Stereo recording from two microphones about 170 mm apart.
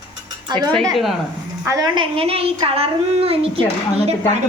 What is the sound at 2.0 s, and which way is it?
A woman's voice, 35° right (ahead or behind).